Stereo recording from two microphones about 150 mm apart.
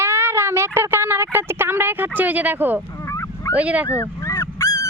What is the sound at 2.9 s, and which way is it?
Dog, 20° left (ahead or behind).